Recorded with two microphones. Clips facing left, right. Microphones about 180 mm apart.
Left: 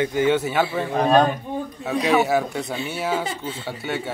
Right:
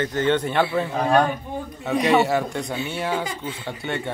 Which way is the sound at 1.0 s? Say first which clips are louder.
Left 3 dB; 25° left (ahead or behind).